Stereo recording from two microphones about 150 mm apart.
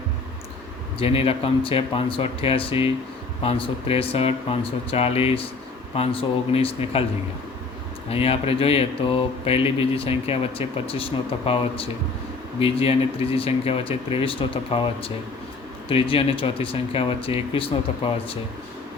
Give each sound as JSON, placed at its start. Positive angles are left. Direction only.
{"t": 0.9, "sound": "speech", "side_deg": 40}
{"t": 8.1, "sound": "speech", "side_deg": 40}